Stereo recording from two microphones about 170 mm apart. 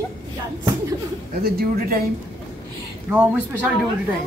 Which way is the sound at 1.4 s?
65° right (ahead or behind).